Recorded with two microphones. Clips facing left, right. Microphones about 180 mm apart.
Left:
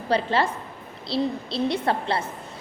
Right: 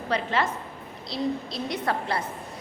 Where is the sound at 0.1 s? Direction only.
30° left (ahead or behind).